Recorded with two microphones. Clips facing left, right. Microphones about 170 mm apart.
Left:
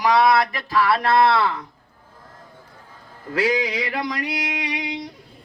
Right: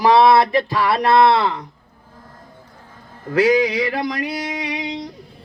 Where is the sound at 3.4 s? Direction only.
25° right (ahead or behind).